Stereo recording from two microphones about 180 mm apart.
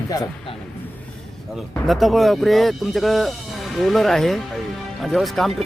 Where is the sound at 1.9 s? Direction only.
Centre (ahead or behind).